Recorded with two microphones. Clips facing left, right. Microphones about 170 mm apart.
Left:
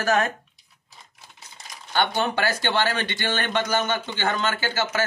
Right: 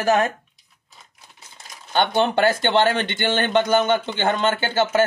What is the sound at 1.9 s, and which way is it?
Speech, 25° right (ahead or behind).